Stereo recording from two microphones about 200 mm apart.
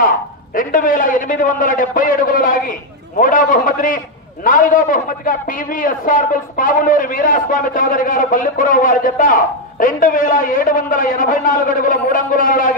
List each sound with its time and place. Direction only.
0.6 s a man's voice: 45° left (ahead or behind)